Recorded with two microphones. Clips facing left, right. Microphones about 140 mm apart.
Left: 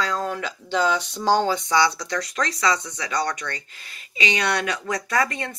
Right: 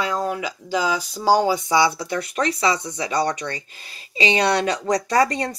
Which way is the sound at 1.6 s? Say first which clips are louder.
Right 2 dB; 20° right (ahead or behind).